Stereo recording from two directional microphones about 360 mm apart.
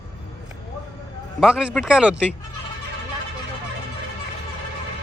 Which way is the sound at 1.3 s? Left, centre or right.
Centre.